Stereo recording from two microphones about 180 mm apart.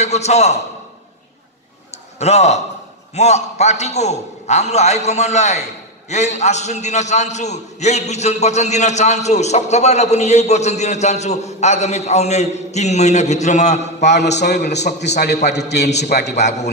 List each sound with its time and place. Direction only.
0.0 s a man's voice: 40° left (ahead or behind)
2.1 s a man's voice: 35° left (ahead or behind)
14.0 s a man's voice: 70° left (ahead or behind)